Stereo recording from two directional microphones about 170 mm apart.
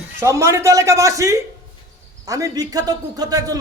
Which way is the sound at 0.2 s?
15° right (ahead or behind).